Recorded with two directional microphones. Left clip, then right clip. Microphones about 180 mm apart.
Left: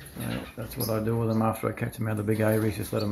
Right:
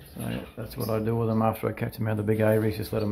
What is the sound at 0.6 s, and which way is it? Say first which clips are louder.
Speech: right 1 dB; 20° right (ahead or behind).